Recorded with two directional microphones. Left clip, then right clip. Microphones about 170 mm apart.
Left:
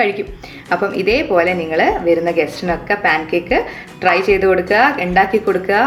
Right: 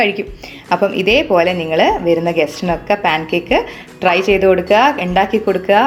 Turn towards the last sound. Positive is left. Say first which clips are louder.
# right 2 dB
turn(degrees=-35)  # may be behind; listen again after turning